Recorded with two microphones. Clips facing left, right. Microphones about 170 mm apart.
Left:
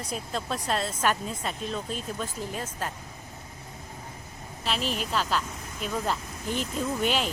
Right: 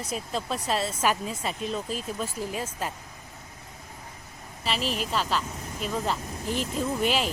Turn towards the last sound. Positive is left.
turn(degrees=0)  # may be behind; listen again after turning